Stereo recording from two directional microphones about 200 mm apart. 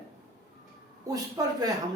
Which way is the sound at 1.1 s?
20° right (ahead or behind).